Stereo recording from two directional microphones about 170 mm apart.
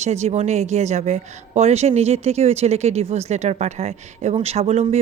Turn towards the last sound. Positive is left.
turn(degrees=-35)  # may be behind; listen again after turning